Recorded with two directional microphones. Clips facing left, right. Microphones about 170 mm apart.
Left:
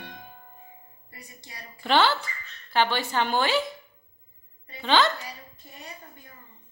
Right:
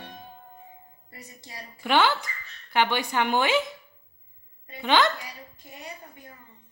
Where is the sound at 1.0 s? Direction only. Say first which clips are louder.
Right 2 dB; 30° right (ahead or behind).